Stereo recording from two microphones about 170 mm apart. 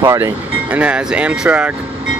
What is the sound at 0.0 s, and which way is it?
Speech, 20° right (ahead or behind).